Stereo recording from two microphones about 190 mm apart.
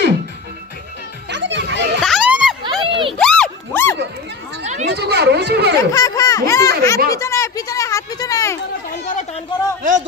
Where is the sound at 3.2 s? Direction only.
5° left (ahead or behind).